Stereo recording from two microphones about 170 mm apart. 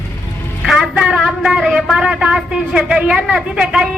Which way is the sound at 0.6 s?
Centre (ahead or behind).